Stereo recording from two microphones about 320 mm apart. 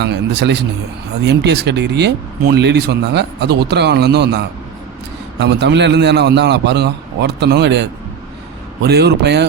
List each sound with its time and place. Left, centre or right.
0.0 s speech: right